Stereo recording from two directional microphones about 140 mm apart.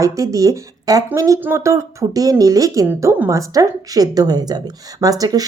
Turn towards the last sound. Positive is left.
turn(degrees=-25)  # may be behind; listen again after turning